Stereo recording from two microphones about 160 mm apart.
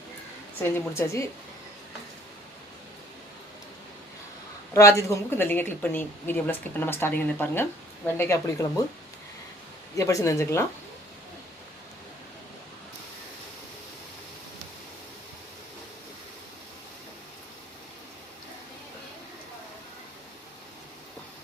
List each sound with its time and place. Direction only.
0.6 s a woman's voice: 15° left (ahead or behind)
4.7 s a woman's voice: 20° left (ahead or behind)
10.0 s speech: 20° left (ahead or behind)